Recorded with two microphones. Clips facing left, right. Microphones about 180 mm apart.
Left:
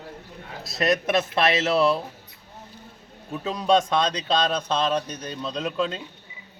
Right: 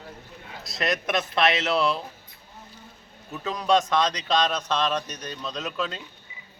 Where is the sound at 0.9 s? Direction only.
30° left (ahead or behind).